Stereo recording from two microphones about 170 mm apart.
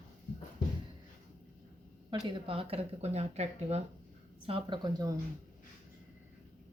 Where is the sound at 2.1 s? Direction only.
30° right (ahead or behind).